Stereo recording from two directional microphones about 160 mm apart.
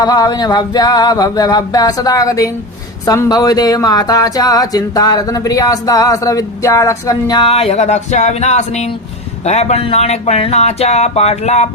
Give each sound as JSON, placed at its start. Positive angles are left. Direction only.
{"t": 0.0, "sound": "speech", "side_deg": 25}